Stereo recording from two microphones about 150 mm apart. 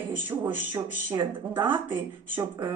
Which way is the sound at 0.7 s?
30° right (ahead or behind).